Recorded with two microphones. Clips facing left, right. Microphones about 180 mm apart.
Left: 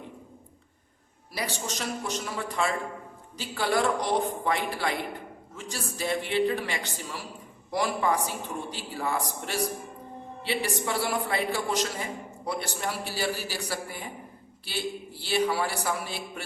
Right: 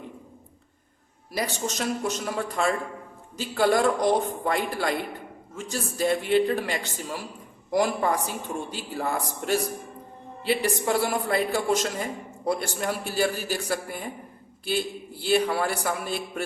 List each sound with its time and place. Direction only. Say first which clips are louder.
1.4 s a man's voice: right 4 dB; 45° right (ahead or behind)